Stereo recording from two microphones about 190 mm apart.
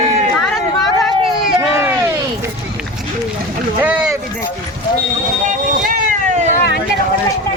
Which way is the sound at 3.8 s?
10° right (ahead or behind).